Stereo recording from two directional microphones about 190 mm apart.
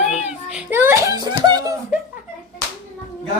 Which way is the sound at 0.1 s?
5° right (ahead or behind).